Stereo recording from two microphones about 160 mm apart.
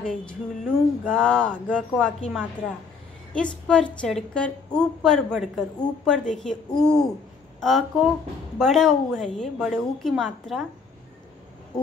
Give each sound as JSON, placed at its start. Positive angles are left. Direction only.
{"t": 0.0, "sound": "a woman's voice", "side_deg": 5}